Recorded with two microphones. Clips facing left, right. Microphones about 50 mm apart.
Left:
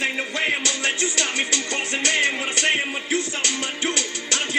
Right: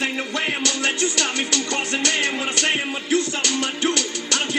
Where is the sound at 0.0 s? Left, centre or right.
Centre.